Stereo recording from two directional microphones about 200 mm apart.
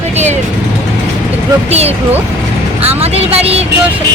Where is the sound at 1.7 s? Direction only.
30° right (ahead or behind).